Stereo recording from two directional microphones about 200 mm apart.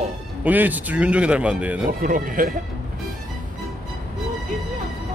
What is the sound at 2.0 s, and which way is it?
Speech, 45° right (ahead or behind).